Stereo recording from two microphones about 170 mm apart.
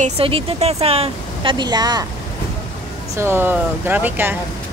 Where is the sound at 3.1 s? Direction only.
15° right (ahead or behind).